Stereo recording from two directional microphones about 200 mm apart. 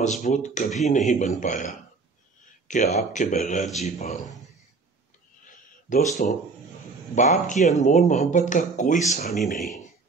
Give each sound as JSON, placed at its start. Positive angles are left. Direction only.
{"t": 0.0, "sound": "speech", "side_deg": 35}
{"t": 5.9, "sound": "speech", "side_deg": 40}